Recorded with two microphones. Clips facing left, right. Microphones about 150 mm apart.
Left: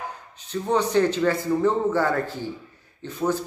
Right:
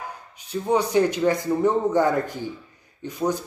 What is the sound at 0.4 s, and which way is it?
A man's voice, 10° right (ahead or behind).